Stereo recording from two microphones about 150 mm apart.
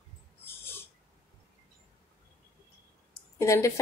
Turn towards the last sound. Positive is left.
turn(degrees=20)  # may be behind; listen again after turning